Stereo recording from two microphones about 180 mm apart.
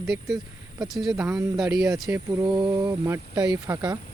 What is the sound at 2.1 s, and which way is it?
Speech, 20° right (ahead or behind).